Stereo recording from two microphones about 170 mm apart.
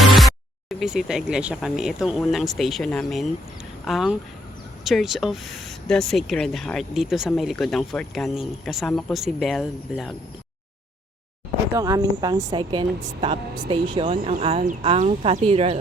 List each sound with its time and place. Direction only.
0.1 s a sound: centre (ahead or behind)
0.8 s speech: centre (ahead or behind)
11.7 s speech: 20° right (ahead or behind)
13.9 s speech: 30° right (ahead or behind)